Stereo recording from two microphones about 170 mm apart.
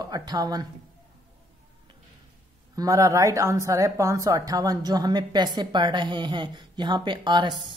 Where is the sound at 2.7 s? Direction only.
20° right (ahead or behind).